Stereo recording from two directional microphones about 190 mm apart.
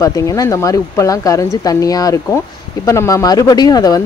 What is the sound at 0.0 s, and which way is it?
Speech, 20° left (ahead or behind).